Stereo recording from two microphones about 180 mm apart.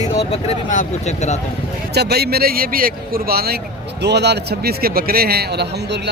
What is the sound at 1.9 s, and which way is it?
A man's voice, 65° right (ahead or behind).